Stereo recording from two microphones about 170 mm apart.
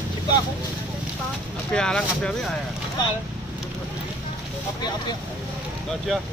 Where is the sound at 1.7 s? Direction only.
5° left (ahead or behind).